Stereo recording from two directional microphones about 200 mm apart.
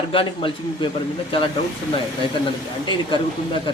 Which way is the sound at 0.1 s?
25° left (ahead or behind).